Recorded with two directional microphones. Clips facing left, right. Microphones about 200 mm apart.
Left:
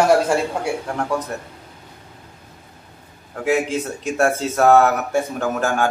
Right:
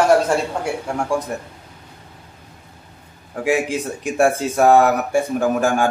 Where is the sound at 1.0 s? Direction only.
10° right (ahead or behind).